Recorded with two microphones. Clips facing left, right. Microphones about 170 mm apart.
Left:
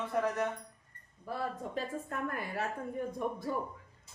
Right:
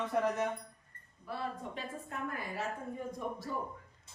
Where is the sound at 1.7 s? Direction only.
50° left (ahead or behind).